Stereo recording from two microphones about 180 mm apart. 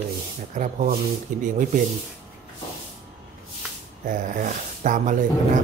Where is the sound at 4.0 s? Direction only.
45° right (ahead or behind).